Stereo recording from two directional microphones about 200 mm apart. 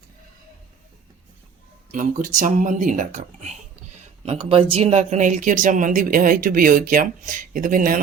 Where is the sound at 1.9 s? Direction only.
40° right (ahead or behind).